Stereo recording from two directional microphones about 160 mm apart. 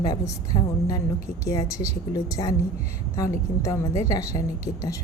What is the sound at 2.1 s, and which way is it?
Speech, 25° left (ahead or behind).